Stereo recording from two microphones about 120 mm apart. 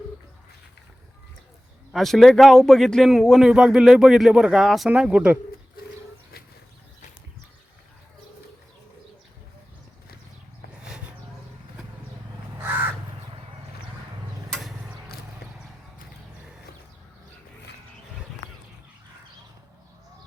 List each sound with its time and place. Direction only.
1.9 s a man's voice: centre (ahead or behind)
10.7 s a sound: 5° right (ahead or behind)
12.6 s crow: 15° right (ahead or behind)